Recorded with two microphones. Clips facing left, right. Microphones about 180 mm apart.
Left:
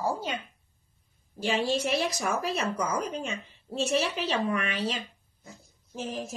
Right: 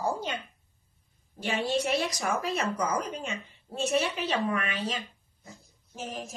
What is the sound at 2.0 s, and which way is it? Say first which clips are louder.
Speech: left 1 dB; 30° left (ahead or behind).